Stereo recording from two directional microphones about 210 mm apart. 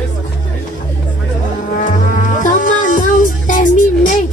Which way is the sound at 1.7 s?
35° left (ahead or behind).